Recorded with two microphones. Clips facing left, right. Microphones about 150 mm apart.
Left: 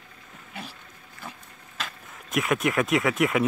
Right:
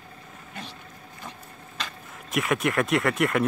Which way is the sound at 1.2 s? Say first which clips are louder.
Even; 5° left (ahead or behind).